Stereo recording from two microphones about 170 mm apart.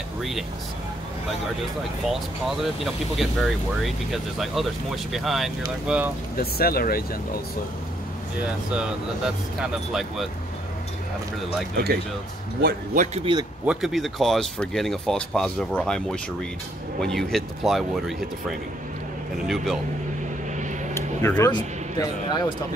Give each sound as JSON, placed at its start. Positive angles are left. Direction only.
{"t": 0.2, "sound": "speech", "side_deg": 0}
{"t": 2.0, "sound": "speech", "side_deg": 0}
{"t": 6.3, "sound": "speech", "side_deg": 60}
{"t": 8.7, "sound": "speech", "side_deg": -5}
{"t": 11.7, "sound": "speech", "side_deg": -65}
{"t": 12.6, "sound": "a man's voice", "side_deg": -50}
{"t": 13.2, "sound": "speech", "side_deg": -25}
{"t": 13.7, "sound": "speech", "side_deg": -5}
{"t": 19.3, "sound": "speech", "side_deg": 0}
{"t": 20.9, "sound": "a sound", "side_deg": 15}
{"t": 21.5, "sound": "speech", "side_deg": 25}